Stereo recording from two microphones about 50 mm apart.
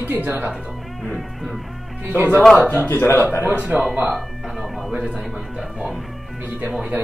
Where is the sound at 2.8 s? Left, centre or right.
Left.